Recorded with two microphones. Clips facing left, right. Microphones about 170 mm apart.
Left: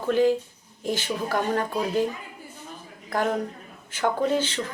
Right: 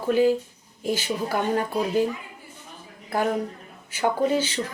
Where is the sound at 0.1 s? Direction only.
10° right (ahead or behind).